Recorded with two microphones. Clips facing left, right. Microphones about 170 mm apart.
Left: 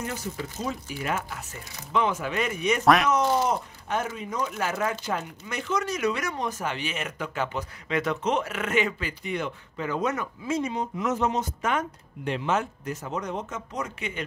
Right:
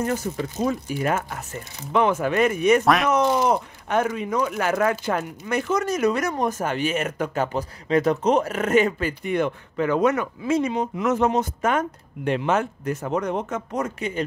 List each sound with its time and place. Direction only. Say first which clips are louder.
0.0 s speech: right 8 dB; 50° right (ahead or behind)
2.8 s speech: even; centre (ahead or behind)
3.1 s speech: right 4 dB; 60° right (ahead or behind)
5.5 s speech: right 6 dB; 45° right (ahead or behind)